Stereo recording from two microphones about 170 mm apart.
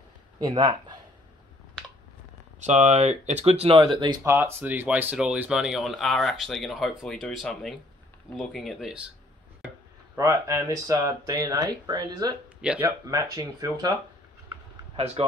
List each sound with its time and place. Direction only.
0.4 s speech: 25° right (ahead or behind)
2.6 s speech: 45° right (ahead or behind)
4.2 s speech: 15° right (ahead or behind)
10.1 s speech: 20° right (ahead or behind)